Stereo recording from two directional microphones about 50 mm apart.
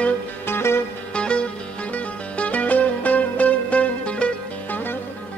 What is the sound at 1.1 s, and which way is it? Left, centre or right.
Music, left.